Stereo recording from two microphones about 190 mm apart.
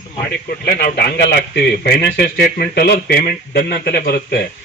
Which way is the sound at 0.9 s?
60° left (ahead or behind).